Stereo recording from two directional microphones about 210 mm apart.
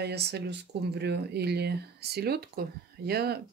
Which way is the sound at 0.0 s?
50° right (ahead or behind).